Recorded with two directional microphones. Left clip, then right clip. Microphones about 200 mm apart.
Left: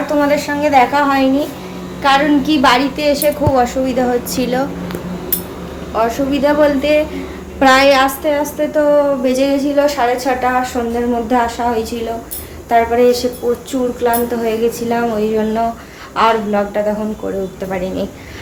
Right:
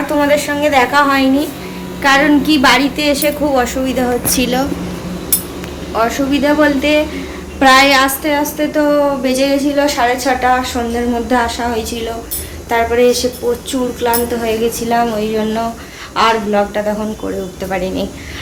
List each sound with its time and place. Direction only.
0.2 s a woman's voice: centre (ahead or behind)
5.9 s a woman's voice: centre (ahead or behind)